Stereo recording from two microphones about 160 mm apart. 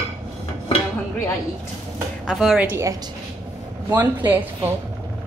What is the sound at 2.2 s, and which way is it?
A woman's voice, centre (ahead or behind).